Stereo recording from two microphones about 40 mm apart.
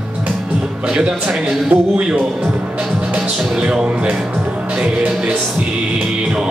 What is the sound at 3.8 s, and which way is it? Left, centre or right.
Speech, right.